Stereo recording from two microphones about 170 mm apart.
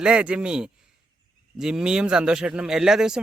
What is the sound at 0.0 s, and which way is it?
Speech, 5° right (ahead or behind).